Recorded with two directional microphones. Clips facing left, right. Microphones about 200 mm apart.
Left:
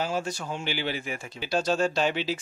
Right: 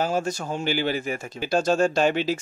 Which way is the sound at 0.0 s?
45° right (ahead or behind).